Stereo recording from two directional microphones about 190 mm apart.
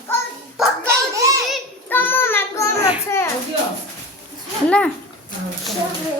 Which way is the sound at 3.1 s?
15° left (ahead or behind).